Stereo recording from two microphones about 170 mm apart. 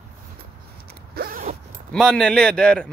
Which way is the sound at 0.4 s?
65° right (ahead or behind).